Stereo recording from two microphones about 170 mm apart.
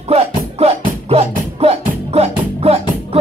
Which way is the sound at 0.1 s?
35° right (ahead or behind).